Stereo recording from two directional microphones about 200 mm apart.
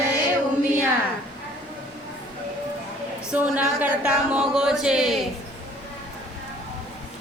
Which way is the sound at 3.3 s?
10° right (ahead or behind).